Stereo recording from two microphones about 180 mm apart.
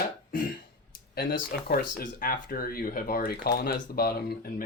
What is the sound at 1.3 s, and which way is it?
Speech, 55° left (ahead or behind).